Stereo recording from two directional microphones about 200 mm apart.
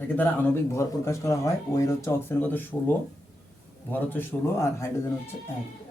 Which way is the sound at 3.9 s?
10° left (ahead or behind).